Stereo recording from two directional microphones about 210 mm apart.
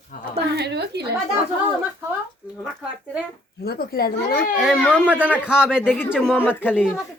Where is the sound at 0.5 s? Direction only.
50° right (ahead or behind).